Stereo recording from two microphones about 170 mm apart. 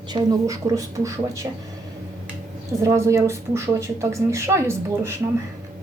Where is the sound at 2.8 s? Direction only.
20° right (ahead or behind).